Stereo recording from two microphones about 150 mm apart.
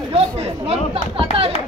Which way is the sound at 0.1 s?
45° right (ahead or behind).